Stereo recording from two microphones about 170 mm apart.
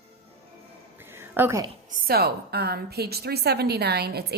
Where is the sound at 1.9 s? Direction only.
55° right (ahead or behind).